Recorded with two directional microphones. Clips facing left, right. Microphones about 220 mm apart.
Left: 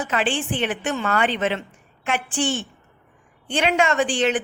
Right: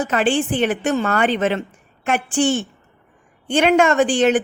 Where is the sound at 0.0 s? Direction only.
45° right (ahead or behind).